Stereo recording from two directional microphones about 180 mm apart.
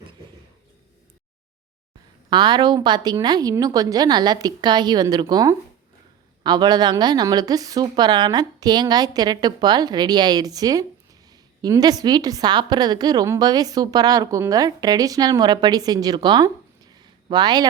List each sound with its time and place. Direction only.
2.3 s a woman's voice: 25° right (ahead or behind)